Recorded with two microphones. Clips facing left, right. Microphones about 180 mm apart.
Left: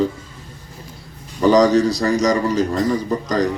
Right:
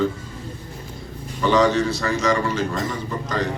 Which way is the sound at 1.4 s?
40° left (ahead or behind).